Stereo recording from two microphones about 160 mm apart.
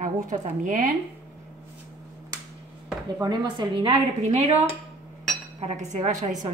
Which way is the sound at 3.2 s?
25° right (ahead or behind).